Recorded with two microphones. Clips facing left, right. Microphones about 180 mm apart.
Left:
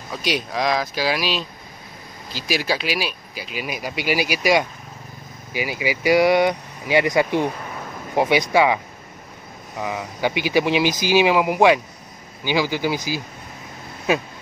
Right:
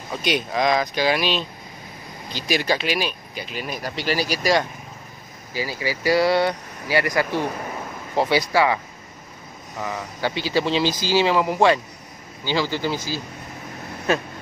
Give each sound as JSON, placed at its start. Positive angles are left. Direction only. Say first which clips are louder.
{"t": 0.1, "sound": "speech", "louder": "right 1 dB", "side_deg": 0}